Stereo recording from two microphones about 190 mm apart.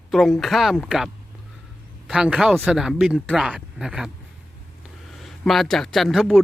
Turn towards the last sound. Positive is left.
turn(degrees=0)  # may be behind; listen again after turning